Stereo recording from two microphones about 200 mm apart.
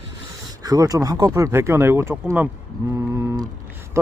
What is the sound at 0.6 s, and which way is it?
Speech, 20° right (ahead or behind).